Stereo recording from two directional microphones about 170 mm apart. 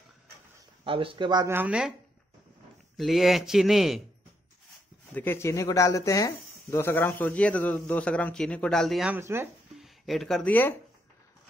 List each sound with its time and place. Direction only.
0.8 s speech: 30° right (ahead or behind)
1.5 s speech: 10° right (ahead or behind)
3.0 s speech: centre (ahead or behind)
5.1 s speech: 10° left (ahead or behind)
9.1 s speech: 15° right (ahead or behind)
9.8 s speech: centre (ahead or behind)